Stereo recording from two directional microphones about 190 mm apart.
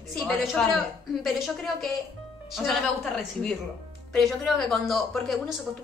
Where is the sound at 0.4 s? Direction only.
Centre (ahead or behind).